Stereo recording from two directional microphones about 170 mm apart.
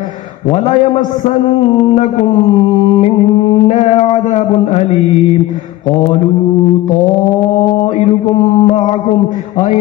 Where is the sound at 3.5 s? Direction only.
40° left (ahead or behind).